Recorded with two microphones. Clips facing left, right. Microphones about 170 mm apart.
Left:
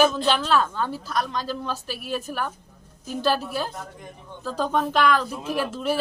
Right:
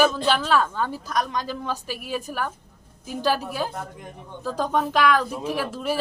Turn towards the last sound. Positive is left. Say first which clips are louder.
# left 1 dB
turn(degrees=-10)  # may be behind; listen again after turning